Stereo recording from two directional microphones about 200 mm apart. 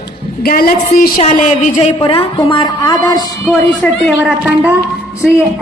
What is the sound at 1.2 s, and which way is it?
A woman's voice, 35° left (ahead or behind).